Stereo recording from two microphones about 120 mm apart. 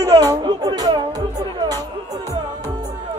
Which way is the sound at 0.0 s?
35° right (ahead or behind).